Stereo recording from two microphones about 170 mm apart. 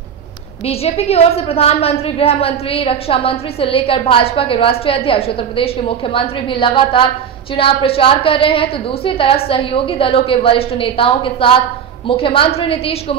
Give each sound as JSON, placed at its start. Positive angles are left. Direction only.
{"t": 0.7, "sound": "a woman's voice", "side_deg": 35}